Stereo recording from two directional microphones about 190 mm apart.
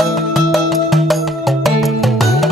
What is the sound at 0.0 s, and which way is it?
Music, centre (ahead or behind).